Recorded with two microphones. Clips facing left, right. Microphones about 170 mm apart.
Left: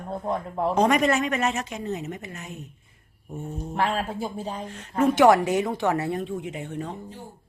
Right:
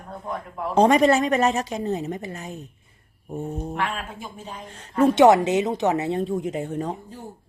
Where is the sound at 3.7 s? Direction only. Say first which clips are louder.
Left 3 dB; 35° left (ahead or behind).